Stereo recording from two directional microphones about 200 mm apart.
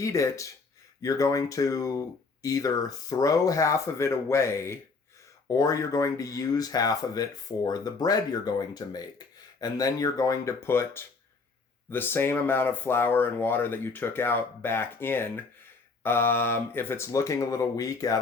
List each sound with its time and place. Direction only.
0.0 s speech: 15° left (ahead or behind)